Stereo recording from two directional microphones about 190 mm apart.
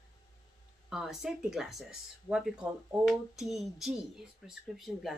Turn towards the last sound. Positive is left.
turn(degrees=0)  # may be behind; listen again after turning